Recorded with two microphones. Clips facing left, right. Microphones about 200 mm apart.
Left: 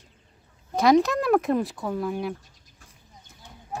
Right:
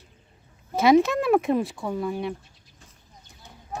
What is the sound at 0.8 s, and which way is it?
Speech, centre (ahead or behind).